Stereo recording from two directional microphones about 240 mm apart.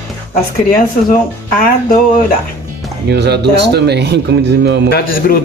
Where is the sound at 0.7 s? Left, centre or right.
Left.